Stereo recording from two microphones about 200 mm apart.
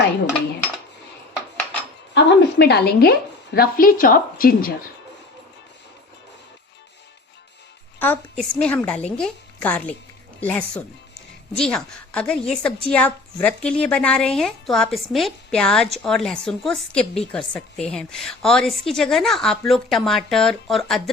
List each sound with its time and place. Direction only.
2.1 s a woman's voice: 55° left (ahead or behind)
7.9 s a woman's voice: 10° left (ahead or behind)